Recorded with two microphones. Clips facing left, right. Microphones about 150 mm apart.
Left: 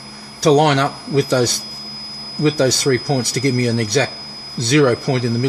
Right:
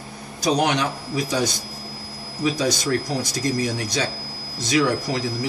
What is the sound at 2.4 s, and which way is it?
Speech, 75° left (ahead or behind).